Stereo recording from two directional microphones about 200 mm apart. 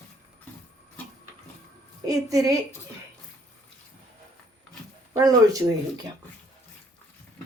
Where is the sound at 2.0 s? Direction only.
15° right (ahead or behind).